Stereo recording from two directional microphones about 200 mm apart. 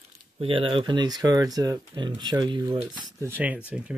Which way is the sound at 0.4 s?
25° right (ahead or behind).